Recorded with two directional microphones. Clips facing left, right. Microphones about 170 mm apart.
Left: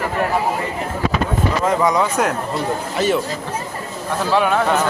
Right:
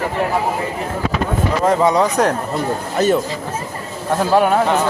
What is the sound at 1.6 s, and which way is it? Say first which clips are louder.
Speech: right 4 dB; 35° right (ahead or behind).